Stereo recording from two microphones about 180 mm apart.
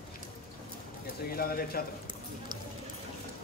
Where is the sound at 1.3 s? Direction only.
55° left (ahead or behind).